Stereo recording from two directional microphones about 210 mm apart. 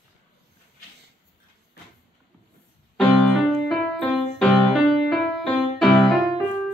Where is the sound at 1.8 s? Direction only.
45° left (ahead or behind).